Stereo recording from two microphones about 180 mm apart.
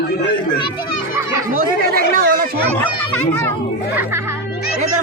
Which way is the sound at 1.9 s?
55° right (ahead or behind).